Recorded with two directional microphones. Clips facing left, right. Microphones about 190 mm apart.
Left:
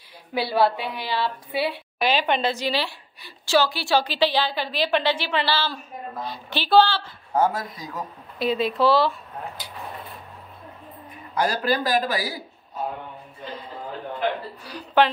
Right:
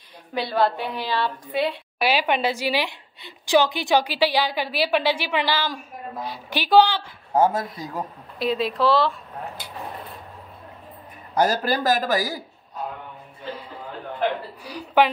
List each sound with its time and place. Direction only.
0.3 s a woman's voice: 10° left (ahead or behind)
2.0 s a woman's voice: 10° right (ahead or behind)
8.4 s speech: centre (ahead or behind)
11.3 s a man's voice: 45° right (ahead or behind)
14.6 s a woman's voice: 10° right (ahead or behind)